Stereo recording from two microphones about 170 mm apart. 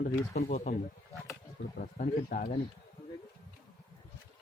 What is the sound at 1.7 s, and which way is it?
Speech, 55° left (ahead or behind).